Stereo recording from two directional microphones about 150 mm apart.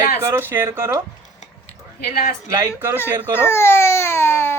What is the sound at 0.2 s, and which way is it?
Speech, 20° right (ahead or behind).